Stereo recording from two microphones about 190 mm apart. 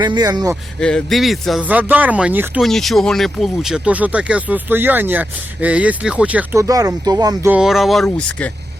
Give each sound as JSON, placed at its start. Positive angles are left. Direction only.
{"t": 0.0, "sound": "speech", "side_deg": -20}
{"t": 0.8, "sound": "speech", "side_deg": 5}
{"t": 7.5, "sound": "speech", "side_deg": 0}